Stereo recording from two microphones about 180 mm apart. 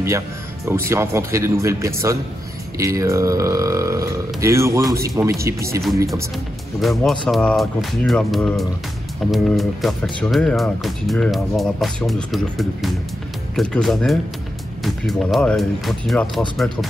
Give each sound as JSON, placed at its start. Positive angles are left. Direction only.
{"t": 0.7, "sound": "speech", "side_deg": -15}
{"t": 6.8, "sound": "speech", "side_deg": 0}